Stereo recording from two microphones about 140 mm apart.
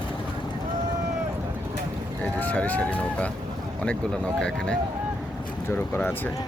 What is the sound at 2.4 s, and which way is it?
Speech, 10° left (ahead or behind).